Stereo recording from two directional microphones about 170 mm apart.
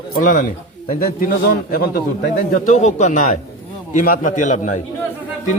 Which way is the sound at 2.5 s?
45° left (ahead or behind).